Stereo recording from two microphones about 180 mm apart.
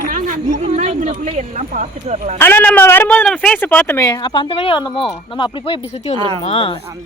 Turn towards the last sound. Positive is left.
turn(degrees=30)  # may be behind; listen again after turning